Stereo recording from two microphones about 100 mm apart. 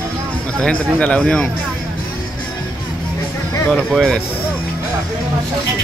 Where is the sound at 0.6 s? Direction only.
15° left (ahead or behind).